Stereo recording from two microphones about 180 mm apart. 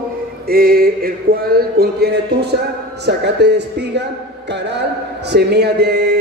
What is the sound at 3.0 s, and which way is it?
A man's voice, 70° right (ahead or behind).